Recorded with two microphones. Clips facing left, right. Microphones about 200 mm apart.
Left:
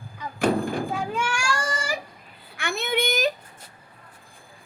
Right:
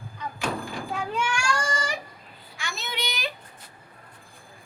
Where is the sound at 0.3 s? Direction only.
55° left (ahead or behind).